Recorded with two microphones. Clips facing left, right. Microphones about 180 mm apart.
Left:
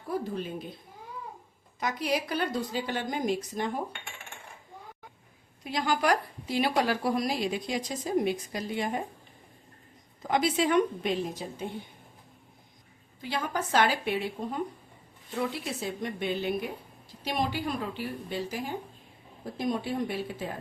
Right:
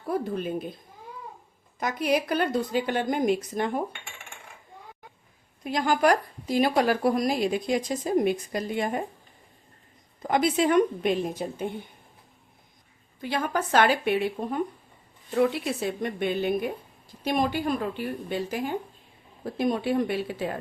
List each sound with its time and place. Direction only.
0.1 s a woman's voice: 55° right (ahead or behind)
1.8 s a woman's voice: 50° right (ahead or behind)
5.6 s speech: 50° right (ahead or behind)
10.2 s speech: 50° right (ahead or behind)
13.2 s a woman's voice: 55° right (ahead or behind)
19.5 s speech: 65° right (ahead or behind)